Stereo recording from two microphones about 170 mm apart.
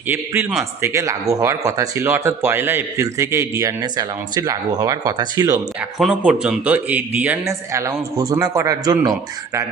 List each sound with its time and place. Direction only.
0.8 s speech: 20° right (ahead or behind)
6.0 s speech: 5° right (ahead or behind); by 9.1 s 20° right (ahead or behind)